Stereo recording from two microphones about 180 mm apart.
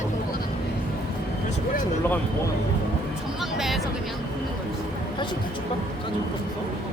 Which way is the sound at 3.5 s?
Centre (ahead or behind).